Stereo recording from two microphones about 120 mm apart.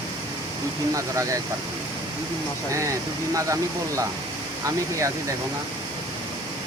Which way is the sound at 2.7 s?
25° right (ahead or behind).